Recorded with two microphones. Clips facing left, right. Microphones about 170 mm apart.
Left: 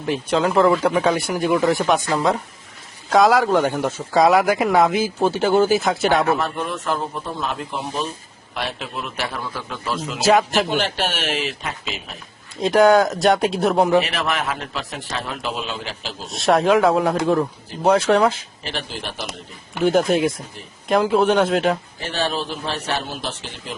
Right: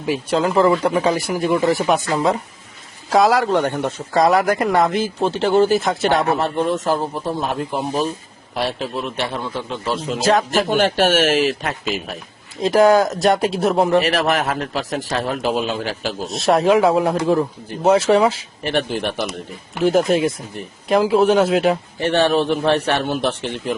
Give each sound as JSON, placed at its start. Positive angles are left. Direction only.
{"t": 0.0, "sound": "speech", "side_deg": -5}
{"t": 6.2, "sound": "a man's voice", "side_deg": -30}
{"t": 10.2, "sound": "speech", "side_deg": 5}
{"t": 10.7, "sound": "speech", "side_deg": -50}
{"t": 12.5, "sound": "speech", "side_deg": 0}
{"t": 14.0, "sound": "a man's voice", "side_deg": -40}
{"t": 16.2, "sound": "speech", "side_deg": 0}
{"t": 18.6, "sound": "a man's voice", "side_deg": -55}
{"t": 19.8, "sound": "speech", "side_deg": 0}
{"t": 22.0, "sound": "a man's voice", "side_deg": -65}